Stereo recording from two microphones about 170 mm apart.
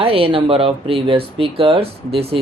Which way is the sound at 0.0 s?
35° right (ahead or behind).